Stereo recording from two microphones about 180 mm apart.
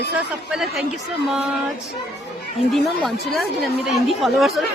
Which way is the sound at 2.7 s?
Centre (ahead or behind).